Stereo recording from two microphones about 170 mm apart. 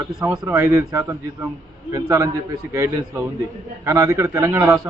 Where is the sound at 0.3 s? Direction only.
15° right (ahead or behind).